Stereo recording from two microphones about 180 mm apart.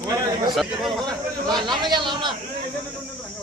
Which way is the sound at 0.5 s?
Centre (ahead or behind).